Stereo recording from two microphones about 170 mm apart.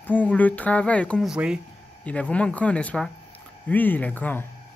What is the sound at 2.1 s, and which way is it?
Speech, 10° left (ahead or behind).